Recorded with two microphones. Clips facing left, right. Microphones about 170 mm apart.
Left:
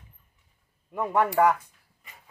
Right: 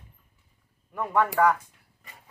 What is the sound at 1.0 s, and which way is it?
Speech, 15° left (ahead or behind).